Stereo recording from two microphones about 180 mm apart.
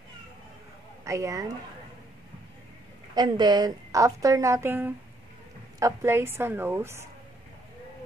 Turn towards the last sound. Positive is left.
turn(degrees=-15)  # may be behind; listen again after turning